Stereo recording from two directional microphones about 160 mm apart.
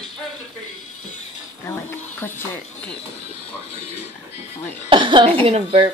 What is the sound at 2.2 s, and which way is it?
Speech, 15° left (ahead or behind).